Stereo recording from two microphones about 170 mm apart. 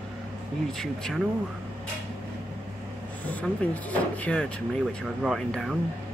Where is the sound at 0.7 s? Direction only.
5° left (ahead or behind).